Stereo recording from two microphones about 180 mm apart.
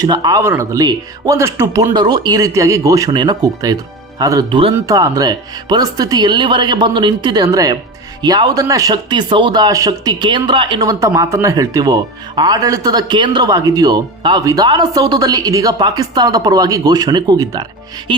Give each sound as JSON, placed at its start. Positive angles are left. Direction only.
{"t": 0.0, "sound": "a man's voice", "side_deg": -25}